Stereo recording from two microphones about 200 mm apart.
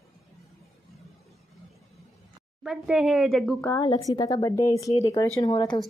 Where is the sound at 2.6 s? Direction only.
5° right (ahead or behind).